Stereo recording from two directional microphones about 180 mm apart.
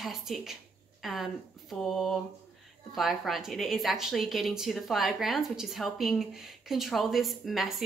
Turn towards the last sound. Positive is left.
turn(degrees=0)  # may be behind; listen again after turning